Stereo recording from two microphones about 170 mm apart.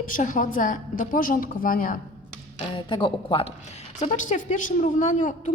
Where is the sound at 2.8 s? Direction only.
30° left (ahead or behind); by 5.5 s 50° left (ahead or behind).